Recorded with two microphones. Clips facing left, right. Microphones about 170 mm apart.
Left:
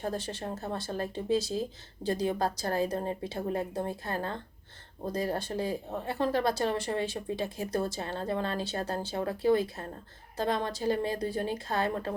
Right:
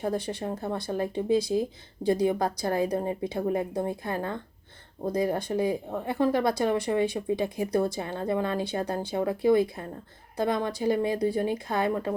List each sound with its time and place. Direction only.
0.1 s speech: 10° right (ahead or behind)